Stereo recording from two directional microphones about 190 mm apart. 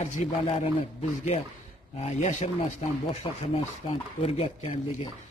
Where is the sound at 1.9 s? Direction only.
35° left (ahead or behind).